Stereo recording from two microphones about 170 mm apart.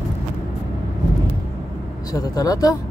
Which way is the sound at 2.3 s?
20° left (ahead or behind).